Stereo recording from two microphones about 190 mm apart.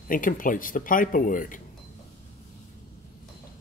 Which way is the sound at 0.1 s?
45° left (ahead or behind).